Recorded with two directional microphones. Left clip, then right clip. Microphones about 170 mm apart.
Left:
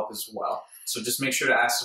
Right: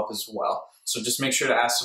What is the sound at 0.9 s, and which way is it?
Speech, 5° right (ahead or behind).